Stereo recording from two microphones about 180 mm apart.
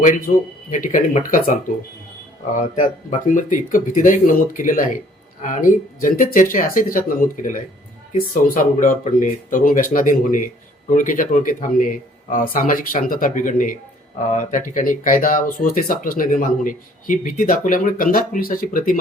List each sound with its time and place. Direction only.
0.7 s speech: 45° left (ahead or behind)
2.6 s speech: 45° left (ahead or behind)